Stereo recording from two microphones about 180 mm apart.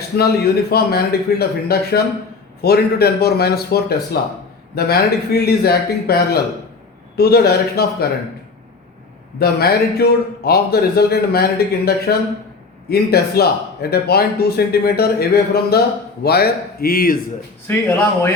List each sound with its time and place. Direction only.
0.2 s speech: 60° left (ahead or behind)
9.4 s speech: 60° left (ahead or behind)
17.7 s speech: 10° left (ahead or behind)